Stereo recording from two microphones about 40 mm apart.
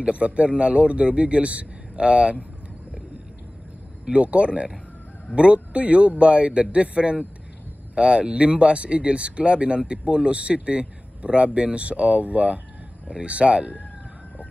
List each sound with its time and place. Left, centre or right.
0.0 s speech: right
4.0 s speech: right